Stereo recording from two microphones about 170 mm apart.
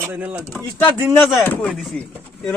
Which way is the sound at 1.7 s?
Centre (ahead or behind).